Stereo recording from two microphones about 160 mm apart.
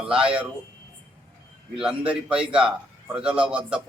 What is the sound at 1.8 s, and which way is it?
A man's voice, 5° right (ahead or behind).